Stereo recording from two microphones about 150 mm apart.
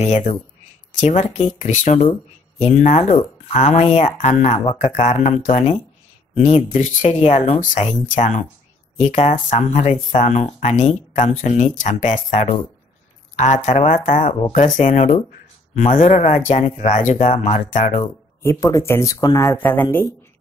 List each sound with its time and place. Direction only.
0.3 s speech: 35° left (ahead or behind)
1.0 s speech: 50° left (ahead or behind)
18.4 s speech: 20° left (ahead or behind)